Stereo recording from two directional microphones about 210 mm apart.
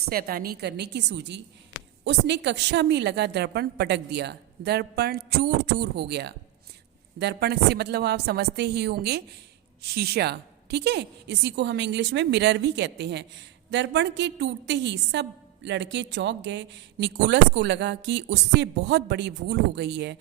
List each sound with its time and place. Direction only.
0.1 s a woman's voice: 45° right (ahead or behind)